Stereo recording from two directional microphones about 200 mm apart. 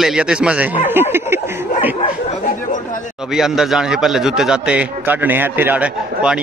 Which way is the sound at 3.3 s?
Centre (ahead or behind).